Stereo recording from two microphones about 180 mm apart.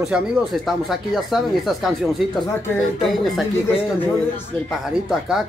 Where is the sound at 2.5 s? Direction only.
15° left (ahead or behind).